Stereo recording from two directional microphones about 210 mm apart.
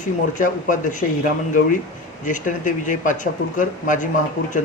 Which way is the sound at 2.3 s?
40° left (ahead or behind).